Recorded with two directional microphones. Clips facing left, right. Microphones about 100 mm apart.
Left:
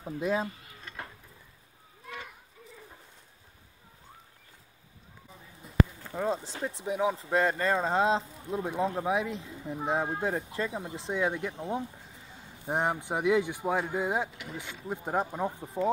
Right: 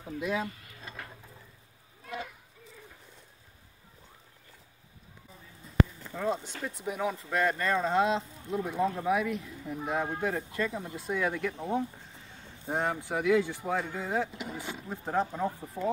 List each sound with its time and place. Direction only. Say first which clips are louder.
0.2 s speech: left 3 dB; 35° left (ahead or behind)
6.1 s speech: left 1 dB; 30° left (ahead or behind)
14.3 s speech: right 3 dB; 20° right (ahead or behind)
14.9 s speech: even; 15° left (ahead or behind)